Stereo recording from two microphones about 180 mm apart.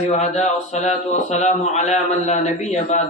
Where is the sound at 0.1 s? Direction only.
40° left (ahead or behind).